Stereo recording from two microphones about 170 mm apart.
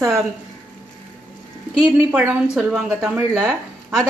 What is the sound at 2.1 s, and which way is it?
A woman's voice, 10° right (ahead or behind).